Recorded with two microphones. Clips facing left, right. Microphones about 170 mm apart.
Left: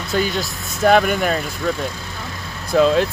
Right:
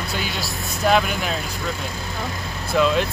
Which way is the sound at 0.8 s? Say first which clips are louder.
Left 5 dB; 50° left (ahead or behind).